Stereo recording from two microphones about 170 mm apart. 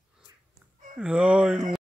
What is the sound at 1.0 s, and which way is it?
Speech, 5° right (ahead or behind).